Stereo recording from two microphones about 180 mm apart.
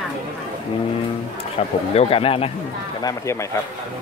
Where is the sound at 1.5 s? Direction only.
30° left (ahead or behind).